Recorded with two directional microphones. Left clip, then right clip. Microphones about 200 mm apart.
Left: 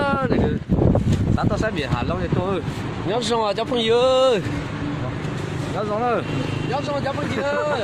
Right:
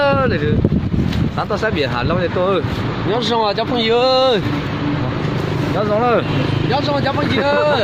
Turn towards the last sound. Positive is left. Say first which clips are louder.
# right 7 dB
turn(degrees=0)  # may be behind; listen again after turning